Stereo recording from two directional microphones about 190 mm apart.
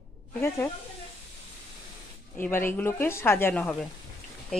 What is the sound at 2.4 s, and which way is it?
Speech, 10° left (ahead or behind).